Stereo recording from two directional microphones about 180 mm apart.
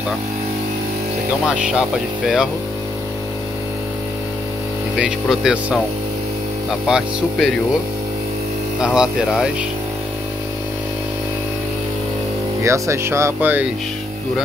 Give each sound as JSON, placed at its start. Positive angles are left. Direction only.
{"t": 1.7, "sound": "speech", "side_deg": -5}
{"t": 4.9, "sound": "speech", "side_deg": -5}
{"t": 6.9, "sound": "speech", "side_deg": 0}
{"t": 8.8, "sound": "speech", "side_deg": -5}
{"t": 12.6, "sound": "speech", "side_deg": -15}